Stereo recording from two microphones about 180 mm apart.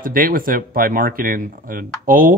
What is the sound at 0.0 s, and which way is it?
Speech, 50° right (ahead or behind).